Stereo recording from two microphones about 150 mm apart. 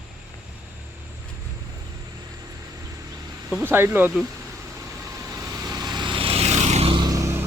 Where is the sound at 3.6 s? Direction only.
15° right (ahead or behind).